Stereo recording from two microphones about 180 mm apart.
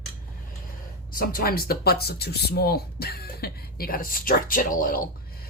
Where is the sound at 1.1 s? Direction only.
55° left (ahead or behind).